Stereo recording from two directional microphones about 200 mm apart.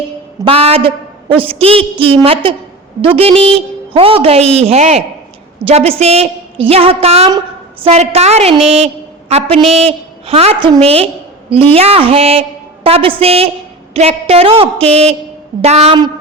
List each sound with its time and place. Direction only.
0.4 s a woman's voice: 30° right (ahead or behind)